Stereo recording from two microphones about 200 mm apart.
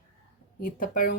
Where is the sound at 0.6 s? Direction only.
45° left (ahead or behind).